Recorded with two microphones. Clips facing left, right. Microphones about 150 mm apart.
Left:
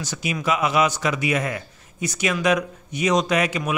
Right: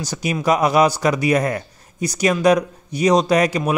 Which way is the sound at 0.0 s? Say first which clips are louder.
Right 5 dB; 40° right (ahead or behind).